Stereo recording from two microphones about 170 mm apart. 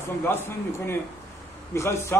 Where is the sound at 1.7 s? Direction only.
15° left (ahead or behind).